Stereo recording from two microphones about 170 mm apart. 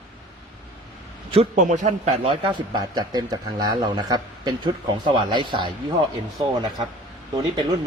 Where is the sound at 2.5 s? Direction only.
25° right (ahead or behind).